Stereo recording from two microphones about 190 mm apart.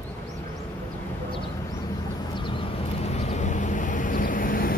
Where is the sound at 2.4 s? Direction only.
25° left (ahead or behind).